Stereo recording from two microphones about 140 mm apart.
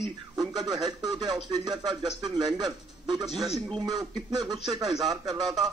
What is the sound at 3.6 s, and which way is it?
Speech, 40° right (ahead or behind).